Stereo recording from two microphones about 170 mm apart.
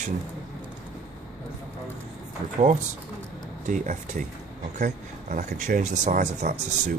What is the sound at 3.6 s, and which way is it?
Speech, 45° right (ahead or behind).